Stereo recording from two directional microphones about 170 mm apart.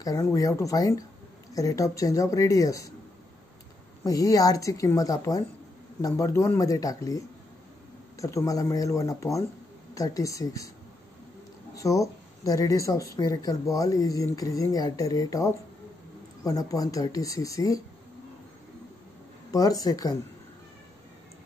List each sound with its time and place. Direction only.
0.0 s a woman's voice: 20° left (ahead or behind)
4.0 s a woman's voice: 20° left (ahead or behind)
11.7 s a woman's voice: 20° left (ahead or behind)
19.5 s a woman's voice: 20° left (ahead or behind)